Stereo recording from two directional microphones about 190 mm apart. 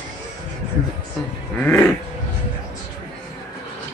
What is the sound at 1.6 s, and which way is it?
Speech, 5° left (ahead or behind).